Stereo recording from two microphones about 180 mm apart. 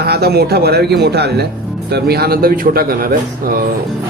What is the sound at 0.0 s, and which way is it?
A man's voice, 65° right (ahead or behind).